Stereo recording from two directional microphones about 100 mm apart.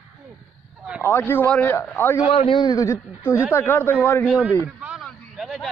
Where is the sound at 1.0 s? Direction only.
20° left (ahead or behind).